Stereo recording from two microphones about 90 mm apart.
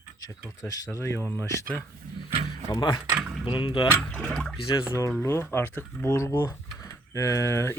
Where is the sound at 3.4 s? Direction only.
65° left (ahead or behind).